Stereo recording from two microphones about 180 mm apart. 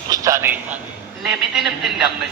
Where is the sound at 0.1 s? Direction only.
20° right (ahead or behind).